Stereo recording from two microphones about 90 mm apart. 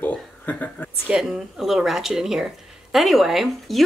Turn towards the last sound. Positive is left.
turn(degrees=0)  # may be behind; listen again after turning